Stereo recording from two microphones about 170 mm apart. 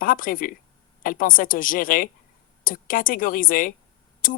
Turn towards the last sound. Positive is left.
turn(degrees=55)  # may be behind; listen again after turning